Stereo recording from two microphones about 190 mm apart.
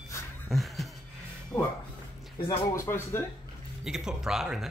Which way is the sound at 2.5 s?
15° left (ahead or behind).